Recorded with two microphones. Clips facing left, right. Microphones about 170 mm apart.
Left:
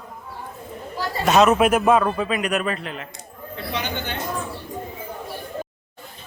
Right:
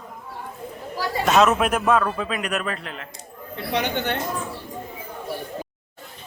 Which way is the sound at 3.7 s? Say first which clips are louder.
Right 5 dB; 65° right (ahead or behind).